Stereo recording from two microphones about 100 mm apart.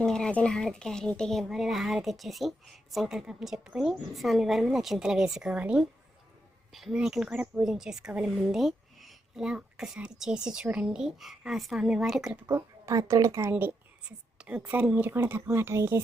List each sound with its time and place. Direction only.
0.0 s a child's voice: 5° left (ahead or behind); by 12.5 s 10° right (ahead or behind)
12.5 s speech: 35° right (ahead or behind)
14.3 s speech: 10° right (ahead or behind)